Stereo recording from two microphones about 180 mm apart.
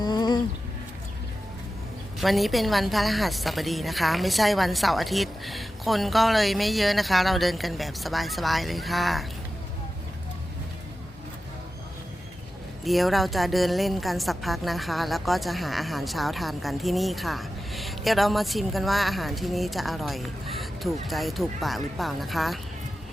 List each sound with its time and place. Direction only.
0.0 s a sound: 25° left (ahead or behind)
2.1 s a woman's voice: centre (ahead or behind)
12.8 s a woman's voice: centre (ahead or behind)